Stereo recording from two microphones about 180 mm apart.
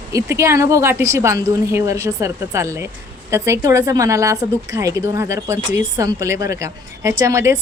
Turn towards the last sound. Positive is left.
turn(degrees=-15)  # may be behind; listen again after turning